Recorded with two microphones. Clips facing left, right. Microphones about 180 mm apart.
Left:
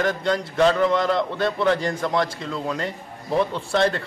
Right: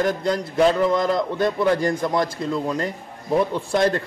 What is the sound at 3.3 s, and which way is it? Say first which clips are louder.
Speech: right 2 dB; 10° right (ahead or behind).